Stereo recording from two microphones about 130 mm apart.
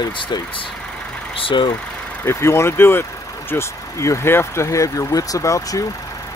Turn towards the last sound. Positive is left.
turn(degrees=25)  # may be behind; listen again after turning